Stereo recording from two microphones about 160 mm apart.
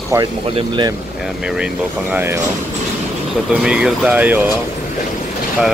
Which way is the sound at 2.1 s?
15° right (ahead or behind).